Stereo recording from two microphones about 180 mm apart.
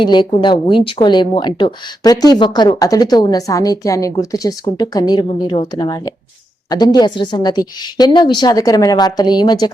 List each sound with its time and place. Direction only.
0.0 s speech: 25° left (ahead or behind)